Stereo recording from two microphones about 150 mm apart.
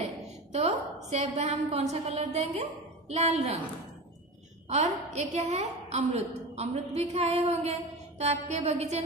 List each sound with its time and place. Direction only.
0.5 s a sound: 45° right (ahead or behind)
1.1 s a woman's voice: 45° right (ahead or behind)
4.6 s a woman's voice: 50° right (ahead or behind)
7.9 s music: 45° right (ahead or behind)